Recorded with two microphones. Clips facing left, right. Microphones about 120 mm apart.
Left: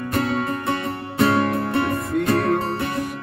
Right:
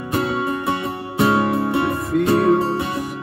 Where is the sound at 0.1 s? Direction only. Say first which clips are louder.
Right 2 dB; 15° right (ahead or behind).